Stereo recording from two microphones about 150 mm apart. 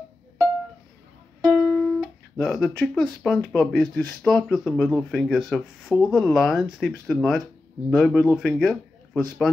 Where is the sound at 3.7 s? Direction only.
Centre (ahead or behind).